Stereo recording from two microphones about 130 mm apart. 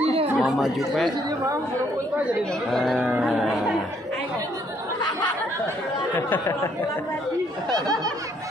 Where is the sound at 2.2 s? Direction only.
Centre (ahead or behind).